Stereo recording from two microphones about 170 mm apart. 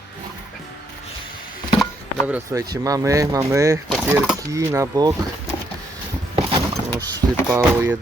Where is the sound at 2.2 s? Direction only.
15° right (ahead or behind).